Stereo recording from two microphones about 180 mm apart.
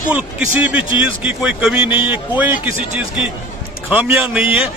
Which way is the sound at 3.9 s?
10° right (ahead or behind).